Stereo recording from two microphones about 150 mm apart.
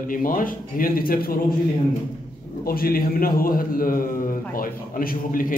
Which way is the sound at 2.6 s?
80° left.